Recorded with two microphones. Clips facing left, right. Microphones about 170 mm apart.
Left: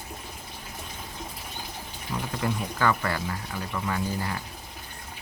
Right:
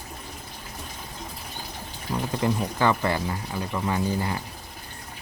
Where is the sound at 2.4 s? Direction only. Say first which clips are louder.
Right 3 dB; 25° right (ahead or behind).